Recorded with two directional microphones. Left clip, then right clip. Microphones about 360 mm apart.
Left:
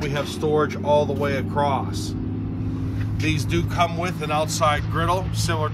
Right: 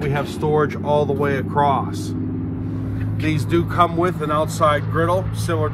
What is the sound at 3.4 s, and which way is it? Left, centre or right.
Speech, centre.